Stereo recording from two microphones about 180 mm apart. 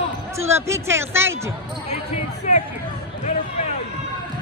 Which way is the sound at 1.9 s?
40° left (ahead or behind).